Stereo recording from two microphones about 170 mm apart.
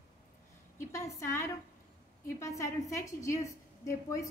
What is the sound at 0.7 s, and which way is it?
A woman's voice, 15° left (ahead or behind).